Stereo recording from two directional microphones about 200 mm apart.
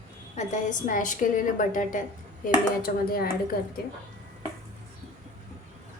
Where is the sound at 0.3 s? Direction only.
40° left (ahead or behind).